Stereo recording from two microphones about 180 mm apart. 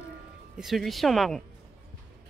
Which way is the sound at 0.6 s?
Centre (ahead or behind).